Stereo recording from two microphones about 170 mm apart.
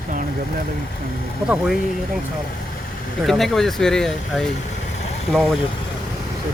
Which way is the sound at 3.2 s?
Centre (ahead or behind).